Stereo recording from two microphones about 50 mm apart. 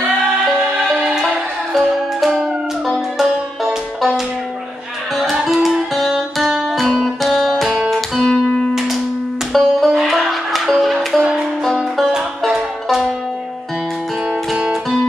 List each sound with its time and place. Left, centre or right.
0.7 s music: centre
5.1 s music: centre
8.2 s music: left
9.5 s music: centre
12.1 s music: centre
14.5 s music: centre